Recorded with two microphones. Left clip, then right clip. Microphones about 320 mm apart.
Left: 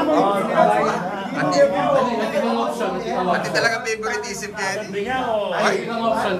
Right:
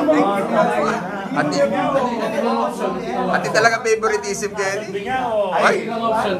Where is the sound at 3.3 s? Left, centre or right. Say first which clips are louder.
Right 5 dB; centre.